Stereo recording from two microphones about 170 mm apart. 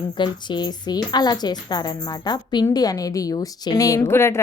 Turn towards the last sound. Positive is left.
turn(degrees=15)  # may be behind; listen again after turning